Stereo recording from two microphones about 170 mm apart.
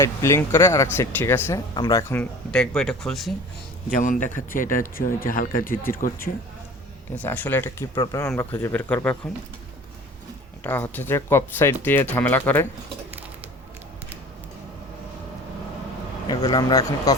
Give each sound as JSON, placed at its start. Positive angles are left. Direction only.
{"t": 0.0, "sound": "a man's voice", "side_deg": 15}
{"t": 2.5, "sound": "speech", "side_deg": 5}
{"t": 3.9, "sound": "a man's voice", "side_deg": 50}
{"t": 7.2, "sound": "a man's voice", "side_deg": 10}
{"t": 10.6, "sound": "speech", "side_deg": 10}
{"t": 16.2, "sound": "a man's voice", "side_deg": 25}